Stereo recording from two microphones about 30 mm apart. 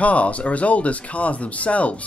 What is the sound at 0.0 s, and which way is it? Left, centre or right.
Speech, left.